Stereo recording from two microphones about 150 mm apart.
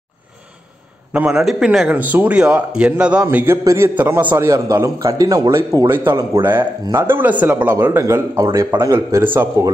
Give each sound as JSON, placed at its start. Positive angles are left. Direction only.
{"t": 1.1, "sound": "a man's voice", "side_deg": -5}